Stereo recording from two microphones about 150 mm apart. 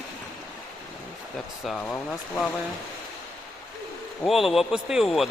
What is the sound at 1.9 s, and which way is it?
Speech, 10° left (ahead or behind).